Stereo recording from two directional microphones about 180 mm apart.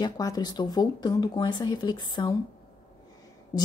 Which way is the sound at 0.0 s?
20° left (ahead or behind).